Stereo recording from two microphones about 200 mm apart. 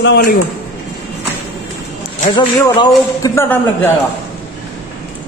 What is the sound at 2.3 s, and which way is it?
A man's voice, 20° left (ahead or behind).